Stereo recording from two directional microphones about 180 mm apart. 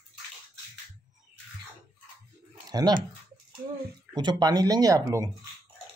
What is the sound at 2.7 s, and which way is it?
Speech, 20° right (ahead or behind).